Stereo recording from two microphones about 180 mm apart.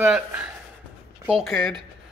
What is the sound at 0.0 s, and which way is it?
A man's voice, 5° right (ahead or behind).